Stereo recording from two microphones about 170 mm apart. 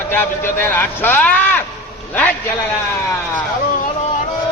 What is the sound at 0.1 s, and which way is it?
A man's voice, 15° left (ahead or behind).